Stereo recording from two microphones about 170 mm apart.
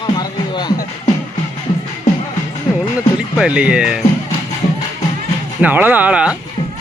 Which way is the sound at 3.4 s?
5° right (ahead or behind).